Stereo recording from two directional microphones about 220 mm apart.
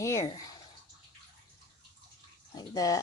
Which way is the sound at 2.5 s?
15° left (ahead or behind).